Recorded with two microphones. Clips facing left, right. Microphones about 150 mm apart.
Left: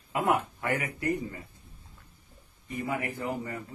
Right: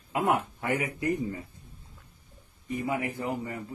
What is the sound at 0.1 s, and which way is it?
Speech, 20° right (ahead or behind).